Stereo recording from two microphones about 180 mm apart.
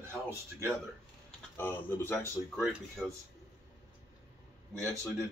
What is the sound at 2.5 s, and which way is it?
Speech, centre (ahead or behind).